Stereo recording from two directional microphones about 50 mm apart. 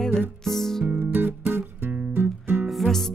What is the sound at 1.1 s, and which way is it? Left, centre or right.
Music, right.